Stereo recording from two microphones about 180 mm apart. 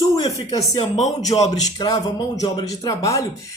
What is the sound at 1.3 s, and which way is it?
Speech, 30° left (ahead or behind).